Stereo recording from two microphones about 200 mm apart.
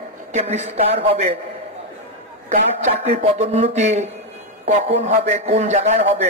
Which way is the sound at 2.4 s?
35° right (ahead or behind).